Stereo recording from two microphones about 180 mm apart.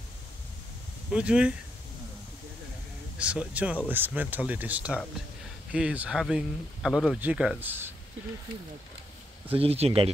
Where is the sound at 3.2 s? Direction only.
5° right (ahead or behind).